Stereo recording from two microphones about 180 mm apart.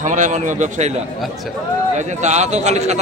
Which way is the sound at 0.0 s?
45° right (ahead or behind).